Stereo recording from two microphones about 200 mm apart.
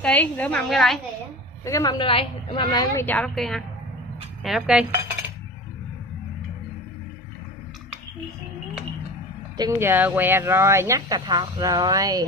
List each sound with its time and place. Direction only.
0.0 s a woman's voice: 5° left (ahead or behind)
1.6 s a woman's voice: 15° left (ahead or behind); by 4.8 s 5° right (ahead or behind)
9.6 s speech: 15° right (ahead or behind)